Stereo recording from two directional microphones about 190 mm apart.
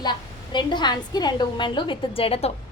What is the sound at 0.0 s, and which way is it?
A woman's voice, 25° left (ahead or behind).